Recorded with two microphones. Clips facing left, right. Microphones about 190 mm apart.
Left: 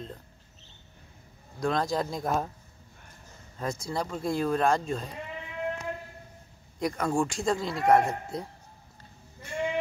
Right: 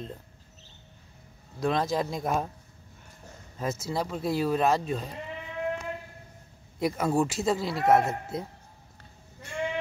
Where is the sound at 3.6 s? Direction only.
5° right (ahead or behind).